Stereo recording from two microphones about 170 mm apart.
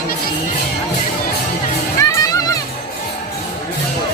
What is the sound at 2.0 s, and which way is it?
Music, 20° left (ahead or behind).